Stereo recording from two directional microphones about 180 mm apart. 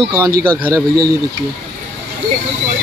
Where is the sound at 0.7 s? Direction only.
20° right (ahead or behind).